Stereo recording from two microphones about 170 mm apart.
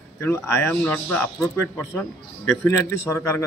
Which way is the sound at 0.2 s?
15° left (ahead or behind).